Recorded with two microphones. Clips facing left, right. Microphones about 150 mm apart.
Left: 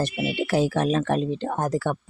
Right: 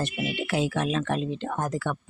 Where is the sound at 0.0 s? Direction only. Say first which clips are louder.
Left 4 dB; 40° left (ahead or behind).